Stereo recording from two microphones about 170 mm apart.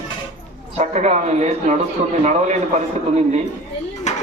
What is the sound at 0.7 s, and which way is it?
A man's voice, 40° right (ahead or behind).